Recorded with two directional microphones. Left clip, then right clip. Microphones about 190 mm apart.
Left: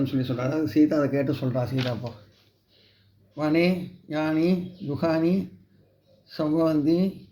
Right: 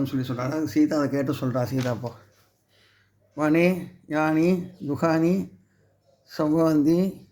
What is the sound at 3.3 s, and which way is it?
Speech, 50° right (ahead or behind).